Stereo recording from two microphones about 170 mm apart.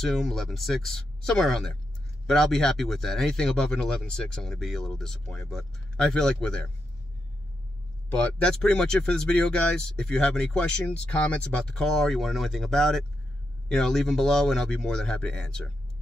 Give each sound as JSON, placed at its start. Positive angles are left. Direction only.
{"t": 0.0, "sound": "speech", "side_deg": 0}
{"t": 8.1, "sound": "speech", "side_deg": 5}